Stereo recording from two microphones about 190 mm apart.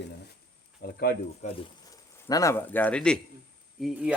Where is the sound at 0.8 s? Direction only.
55° left (ahead or behind).